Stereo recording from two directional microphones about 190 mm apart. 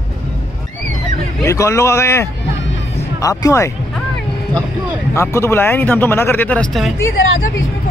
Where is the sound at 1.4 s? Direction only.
15° left (ahead or behind).